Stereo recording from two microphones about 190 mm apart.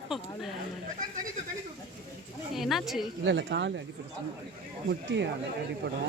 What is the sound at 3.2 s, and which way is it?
Speech, 70° right (ahead or behind).